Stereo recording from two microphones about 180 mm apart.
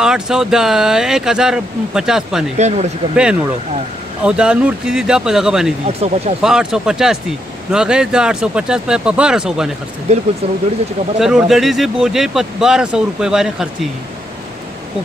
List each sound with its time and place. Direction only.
0.0 s speech: 5° right (ahead or behind)
2.5 s speech: 40° right (ahead or behind)
3.2 s speech: 5° right (ahead or behind)
5.9 s speech: 35° right (ahead or behind)
6.4 s speech: 5° right (ahead or behind)
10.1 s speech: 35° right (ahead or behind)
11.1 s speech: centre (ahead or behind)